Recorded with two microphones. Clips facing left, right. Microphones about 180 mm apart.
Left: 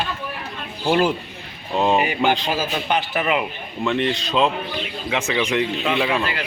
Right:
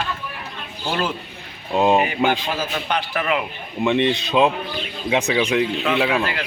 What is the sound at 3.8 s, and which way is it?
Speech, 20° right (ahead or behind).